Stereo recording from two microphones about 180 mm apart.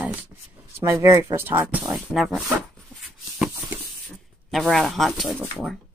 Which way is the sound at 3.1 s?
5° right (ahead or behind).